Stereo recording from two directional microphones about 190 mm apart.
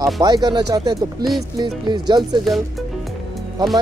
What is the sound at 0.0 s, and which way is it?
Speech, 20° right (ahead or behind).